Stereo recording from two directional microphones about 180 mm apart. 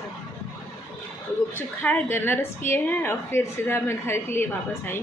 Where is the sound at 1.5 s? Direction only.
10° left (ahead or behind).